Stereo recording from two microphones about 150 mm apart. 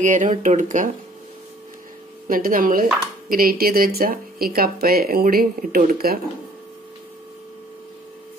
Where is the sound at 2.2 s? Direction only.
65° right (ahead or behind).